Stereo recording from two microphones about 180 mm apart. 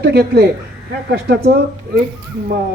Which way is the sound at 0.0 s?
65° right (ahead or behind).